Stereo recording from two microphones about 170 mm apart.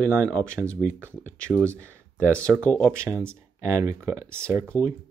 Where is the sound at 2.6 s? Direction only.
10° left (ahead or behind).